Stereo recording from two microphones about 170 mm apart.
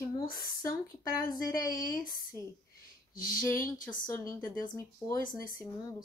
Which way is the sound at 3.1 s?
55° left (ahead or behind).